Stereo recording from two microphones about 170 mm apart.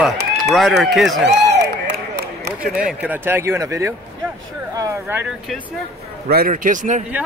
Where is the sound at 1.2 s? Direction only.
80° right.